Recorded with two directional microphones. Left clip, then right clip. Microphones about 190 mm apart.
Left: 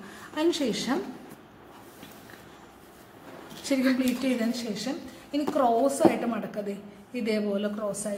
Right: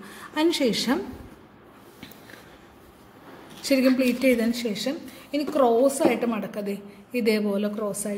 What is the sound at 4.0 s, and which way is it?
A woman's voice, 40° right (ahead or behind).